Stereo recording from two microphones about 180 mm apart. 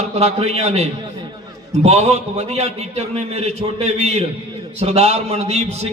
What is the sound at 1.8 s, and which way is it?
Speech, 35° right (ahead or behind).